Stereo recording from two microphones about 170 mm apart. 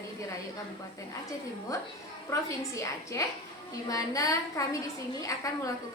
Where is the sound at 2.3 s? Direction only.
20° left (ahead or behind).